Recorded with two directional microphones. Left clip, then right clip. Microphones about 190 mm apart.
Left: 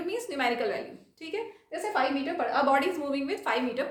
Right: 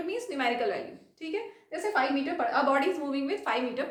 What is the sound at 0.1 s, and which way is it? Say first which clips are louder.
A woman's voice: left 1 dB; 20° left (ahead or behind).